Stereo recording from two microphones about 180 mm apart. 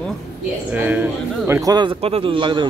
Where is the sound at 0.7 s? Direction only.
10° right (ahead or behind); by 2.6 s 25° right (ahead or behind).